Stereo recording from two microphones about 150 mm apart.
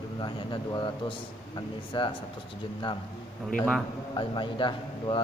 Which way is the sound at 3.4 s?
5° left (ahead or behind).